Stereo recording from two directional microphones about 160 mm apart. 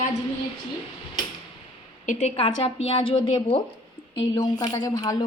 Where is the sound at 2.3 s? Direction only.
35° left (ahead or behind).